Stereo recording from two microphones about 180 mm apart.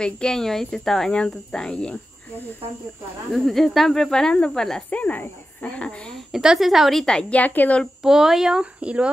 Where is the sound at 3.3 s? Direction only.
Centre (ahead or behind).